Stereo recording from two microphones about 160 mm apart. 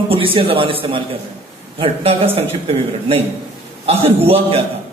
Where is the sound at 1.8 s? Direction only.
35° right (ahead or behind).